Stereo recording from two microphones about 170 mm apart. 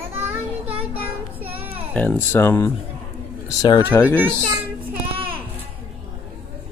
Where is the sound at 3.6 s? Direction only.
25° left (ahead or behind).